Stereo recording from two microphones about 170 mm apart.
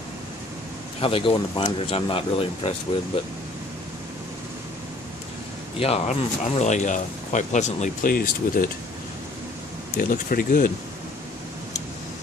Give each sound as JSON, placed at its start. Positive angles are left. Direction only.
{"t": 1.0, "sound": "speech", "side_deg": 30}
{"t": 5.8, "sound": "speech", "side_deg": 35}
{"t": 9.9, "sound": "speech", "side_deg": 55}